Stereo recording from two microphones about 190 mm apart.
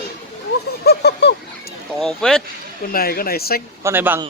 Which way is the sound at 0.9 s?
60° left (ahead or behind).